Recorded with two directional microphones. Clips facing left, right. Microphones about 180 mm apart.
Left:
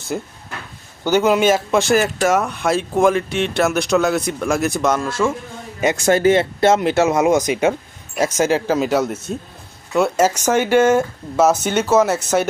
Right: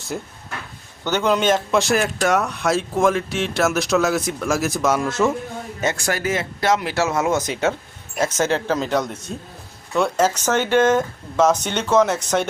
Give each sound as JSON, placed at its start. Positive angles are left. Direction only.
{"t": 1.0, "sound": "speech", "side_deg": 10}
{"t": 4.9, "sound": "speech", "side_deg": -20}
{"t": 5.8, "sound": "speech", "side_deg": 20}